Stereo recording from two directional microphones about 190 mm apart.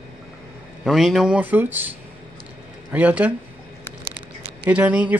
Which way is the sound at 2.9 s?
10° right (ahead or behind).